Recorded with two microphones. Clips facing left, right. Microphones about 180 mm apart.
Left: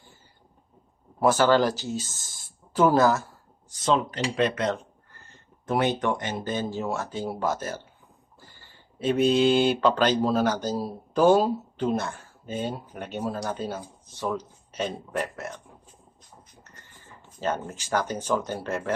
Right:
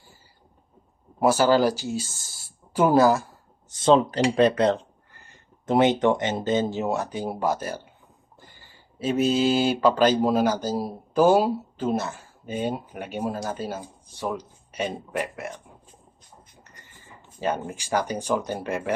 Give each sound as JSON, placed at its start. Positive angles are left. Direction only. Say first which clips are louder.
{"t": 1.2, "sound": "speech", "louder": "right 1 dB", "side_deg": -10}
{"t": 3.7, "sound": "speech", "louder": "right 6 dB", "side_deg": -30}
{"t": 5.1, "sound": "speech", "louder": "even", "side_deg": -15}
{"t": 8.4, "sound": "a sound", "louder": "right 1 dB", "side_deg": -15}
{"t": 9.0, "sound": "speech", "louder": "left 1 dB", "side_deg": -5}
{"t": 17.4, "sound": "speech", "louder": "right 2 dB", "side_deg": -10}